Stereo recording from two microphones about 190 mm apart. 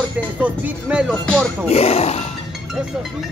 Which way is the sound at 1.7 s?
35° left (ahead or behind).